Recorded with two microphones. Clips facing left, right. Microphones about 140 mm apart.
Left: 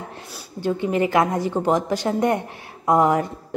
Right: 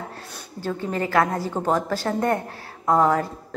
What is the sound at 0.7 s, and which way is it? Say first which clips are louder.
A woman's voice: left 5 dB; 15° left (ahead or behind).